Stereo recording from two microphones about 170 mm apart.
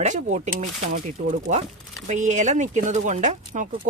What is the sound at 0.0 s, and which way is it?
Speech, 45° right (ahead or behind).